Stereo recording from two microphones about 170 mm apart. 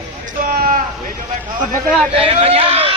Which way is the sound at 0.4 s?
60° right (ahead or behind).